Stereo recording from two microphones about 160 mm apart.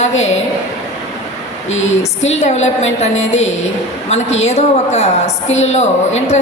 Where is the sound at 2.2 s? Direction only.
45° left (ahead or behind).